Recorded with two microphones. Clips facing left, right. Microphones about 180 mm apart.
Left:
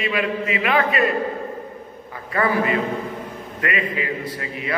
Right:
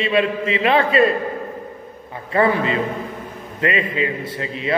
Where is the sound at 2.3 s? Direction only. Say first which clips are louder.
Right 3 dB; 25° right (ahead or behind).